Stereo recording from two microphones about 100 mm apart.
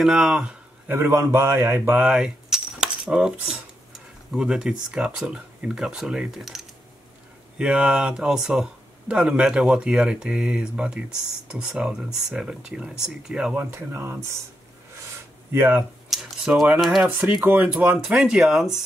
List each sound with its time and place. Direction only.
0.0 s speech: 5° right (ahead or behind)
0.8 s a man's voice: 25° right (ahead or behind)
2.0 s speech: 5° right (ahead or behind)
13.7 s a man's voice: 25° right (ahead or behind)
15.5 s a man's voice: 20° right (ahead or behind)
16.1 s a sound: centre (ahead or behind)
16.8 s speech: centre (ahead or behind)